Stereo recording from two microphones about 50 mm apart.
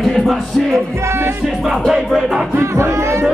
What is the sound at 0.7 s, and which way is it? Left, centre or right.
Music, right.